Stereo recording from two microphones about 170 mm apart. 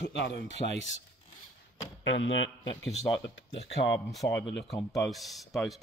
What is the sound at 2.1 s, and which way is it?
Speech, 90° left.